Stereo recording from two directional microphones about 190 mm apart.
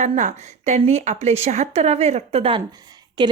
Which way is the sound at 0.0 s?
40° right (ahead or behind).